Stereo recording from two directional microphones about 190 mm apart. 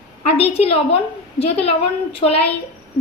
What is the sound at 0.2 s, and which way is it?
A woman's voice, 35° left (ahead or behind).